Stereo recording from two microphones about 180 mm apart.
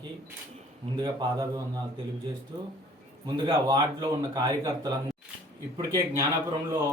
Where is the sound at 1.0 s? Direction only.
20° right (ahead or behind).